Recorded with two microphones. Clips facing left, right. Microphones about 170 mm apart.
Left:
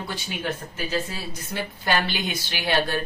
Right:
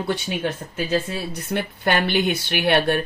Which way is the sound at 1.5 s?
60° right (ahead or behind).